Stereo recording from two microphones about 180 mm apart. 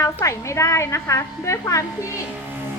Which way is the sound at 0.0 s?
15° left (ahead or behind).